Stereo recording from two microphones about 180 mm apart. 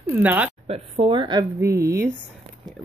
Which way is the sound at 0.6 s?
35° right (ahead or behind).